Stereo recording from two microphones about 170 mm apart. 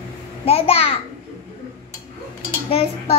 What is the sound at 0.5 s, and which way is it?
Speech, 35° left (ahead or behind).